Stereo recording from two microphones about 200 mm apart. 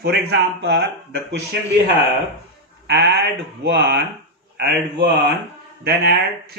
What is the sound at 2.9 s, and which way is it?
Speech, 55° right (ahead or behind).